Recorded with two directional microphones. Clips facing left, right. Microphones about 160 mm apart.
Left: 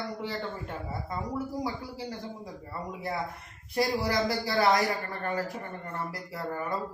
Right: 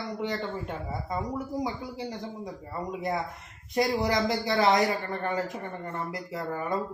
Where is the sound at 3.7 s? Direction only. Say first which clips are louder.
Right 2 dB; 20° right (ahead or behind).